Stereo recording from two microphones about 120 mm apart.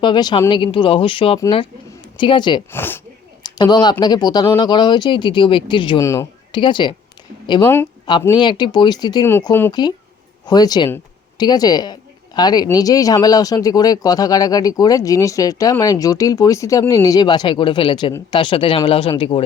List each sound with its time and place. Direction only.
0.0 s speech: 40° left (ahead or behind)
2.7 s speech: 20° left (ahead or behind)
3.4 s a sound: 35° left (ahead or behind)
4.0 s speech: 35° left (ahead or behind)
6.0 s speech: 25° left (ahead or behind)
6.5 s speech: 40° left (ahead or behind)
8.4 s speech: 40° left (ahead or behind)